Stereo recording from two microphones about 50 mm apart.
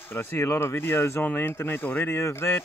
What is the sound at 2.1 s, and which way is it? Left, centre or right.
Speech, left.